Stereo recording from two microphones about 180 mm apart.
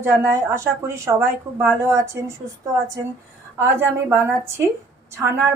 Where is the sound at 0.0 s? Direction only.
15° right (ahead or behind).